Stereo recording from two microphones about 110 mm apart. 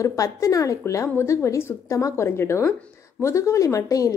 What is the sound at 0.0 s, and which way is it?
A woman's voice, 30° left (ahead or behind).